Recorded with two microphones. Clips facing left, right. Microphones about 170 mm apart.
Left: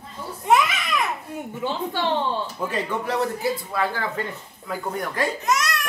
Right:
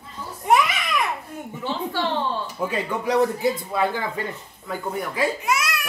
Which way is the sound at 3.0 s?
20° right (ahead or behind).